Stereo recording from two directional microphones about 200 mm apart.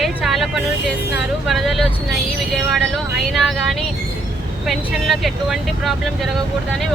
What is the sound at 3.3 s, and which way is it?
Speech, centre (ahead or behind).